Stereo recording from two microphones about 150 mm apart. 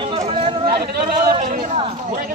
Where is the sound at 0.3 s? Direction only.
40° right (ahead or behind).